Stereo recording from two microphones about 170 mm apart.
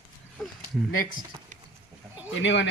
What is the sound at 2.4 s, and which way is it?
Speech, 90° left.